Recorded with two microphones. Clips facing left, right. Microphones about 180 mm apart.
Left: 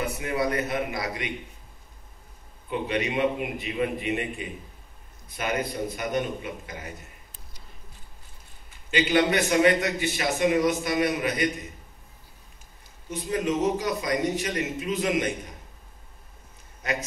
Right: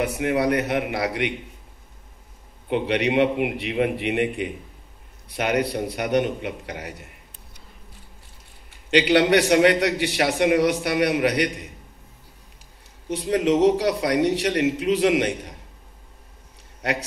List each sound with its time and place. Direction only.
0.0 s a man's voice: 70° right (ahead or behind)
2.7 s a man's voice: 75° right (ahead or behind)
8.6 s a man's voice: 80° right
13.1 s a man's voice: 80° right
16.8 s a man's voice: 80° right